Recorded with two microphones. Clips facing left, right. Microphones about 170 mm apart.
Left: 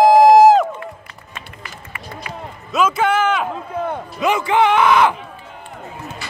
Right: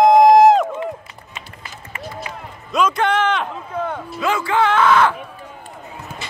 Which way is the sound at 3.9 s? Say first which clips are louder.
Left 4 dB; 20° left (ahead or behind).